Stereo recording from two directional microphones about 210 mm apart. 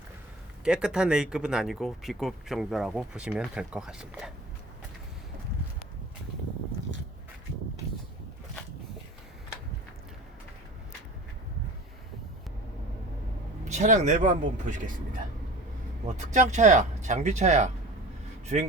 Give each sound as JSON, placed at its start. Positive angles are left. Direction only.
{"t": 0.6, "sound": "speech", "side_deg": -5}
{"t": 13.7, "sound": "speech", "side_deg": -35}